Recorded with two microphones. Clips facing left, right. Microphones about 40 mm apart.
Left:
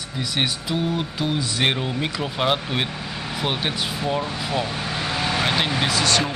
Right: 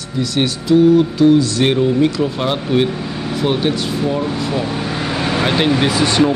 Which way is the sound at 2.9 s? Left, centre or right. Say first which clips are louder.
Right 7 dB; centre.